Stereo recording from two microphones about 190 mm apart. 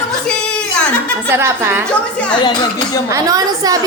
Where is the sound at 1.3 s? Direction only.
10° right (ahead or behind).